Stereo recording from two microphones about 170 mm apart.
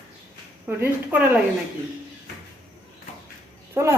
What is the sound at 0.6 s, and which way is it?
Speech, 10° right (ahead or behind).